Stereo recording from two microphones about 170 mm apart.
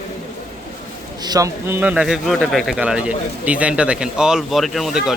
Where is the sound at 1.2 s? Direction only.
20° right (ahead or behind).